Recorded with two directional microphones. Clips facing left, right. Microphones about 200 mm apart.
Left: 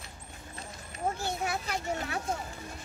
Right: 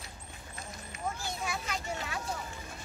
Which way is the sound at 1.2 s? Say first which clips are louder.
Left 4 dB; 60° left (ahead or behind).